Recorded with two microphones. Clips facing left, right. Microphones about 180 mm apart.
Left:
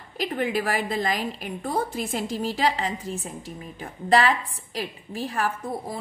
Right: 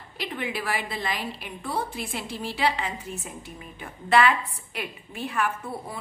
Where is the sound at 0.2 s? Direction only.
45° left (ahead or behind).